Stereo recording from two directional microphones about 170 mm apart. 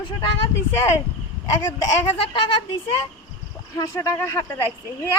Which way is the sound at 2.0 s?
30° left (ahead or behind).